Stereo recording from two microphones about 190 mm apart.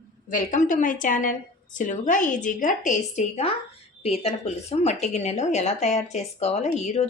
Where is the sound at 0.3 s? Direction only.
45° left (ahead or behind).